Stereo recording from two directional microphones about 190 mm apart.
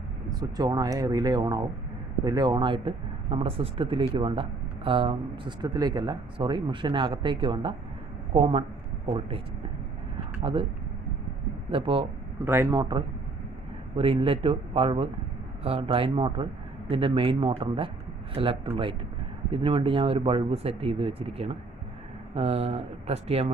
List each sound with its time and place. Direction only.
0.3 s speech: 20° right (ahead or behind)
10.4 s speech: 25° right (ahead or behind)
11.7 s speech: 30° right (ahead or behind)
12.4 s speech: 15° right (ahead or behind); by 23.5 s 30° right (ahead or behind)